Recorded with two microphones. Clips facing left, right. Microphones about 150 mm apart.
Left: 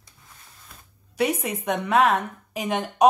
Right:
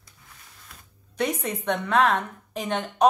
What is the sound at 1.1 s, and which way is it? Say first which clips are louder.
A woman's voice: left 3 dB; 10° left (ahead or behind).